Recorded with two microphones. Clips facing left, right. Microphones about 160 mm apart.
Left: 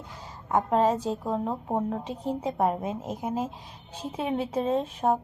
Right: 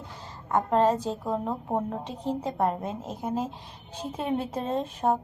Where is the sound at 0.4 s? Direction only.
5° left (ahead or behind).